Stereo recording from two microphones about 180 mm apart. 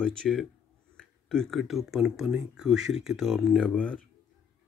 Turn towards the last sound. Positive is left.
turn(degrees=5)  # may be behind; listen again after turning